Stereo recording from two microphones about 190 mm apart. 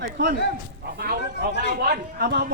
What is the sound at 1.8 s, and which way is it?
Speech, 55° right (ahead or behind).